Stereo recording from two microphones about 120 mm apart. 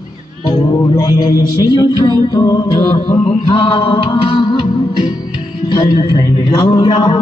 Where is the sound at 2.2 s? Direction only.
30° left (ahead or behind).